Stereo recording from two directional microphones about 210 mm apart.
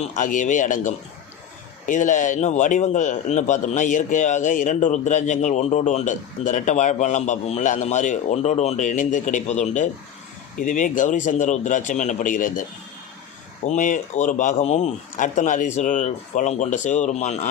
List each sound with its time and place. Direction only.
0.2 s a man's voice: 35° left (ahead or behind)
13.7 s a man's voice: 35° left (ahead or behind)